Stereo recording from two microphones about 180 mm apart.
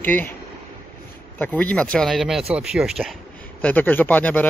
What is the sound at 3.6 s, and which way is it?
Speech, 10° left (ahead or behind).